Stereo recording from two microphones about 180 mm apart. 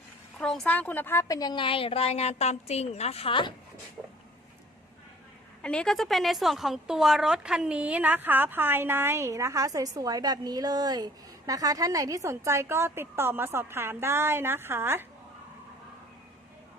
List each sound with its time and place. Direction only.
0.3 s a woman's voice: 5° left (ahead or behind); by 3.5 s 30° left (ahead or behind)
5.6 s a woman's voice: 5° left (ahead or behind); by 15.0 s 15° right (ahead or behind)